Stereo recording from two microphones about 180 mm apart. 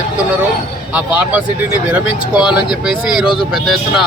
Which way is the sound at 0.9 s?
10° right (ahead or behind).